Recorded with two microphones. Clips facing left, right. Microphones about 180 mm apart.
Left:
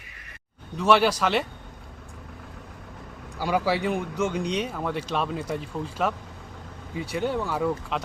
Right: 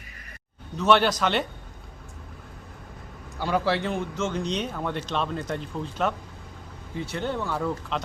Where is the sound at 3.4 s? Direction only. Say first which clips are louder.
Left 1 dB; 10° left (ahead or behind).